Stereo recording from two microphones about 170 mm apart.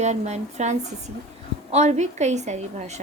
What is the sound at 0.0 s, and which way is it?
A woman's voice, 40° right (ahead or behind).